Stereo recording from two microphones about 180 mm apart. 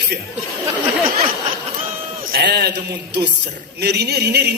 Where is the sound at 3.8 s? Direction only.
65° right (ahead or behind).